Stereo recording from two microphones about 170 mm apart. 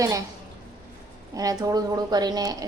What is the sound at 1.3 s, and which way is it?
A woman's voice, 20° right (ahead or behind).